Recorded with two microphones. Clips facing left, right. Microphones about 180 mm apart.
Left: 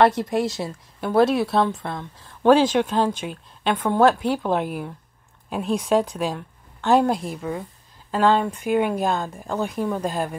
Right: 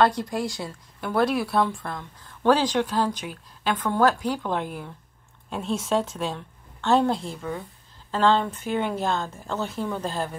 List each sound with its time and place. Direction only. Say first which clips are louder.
0.0 s a woman's voice: left 4 dB; 25° left (ahead or behind)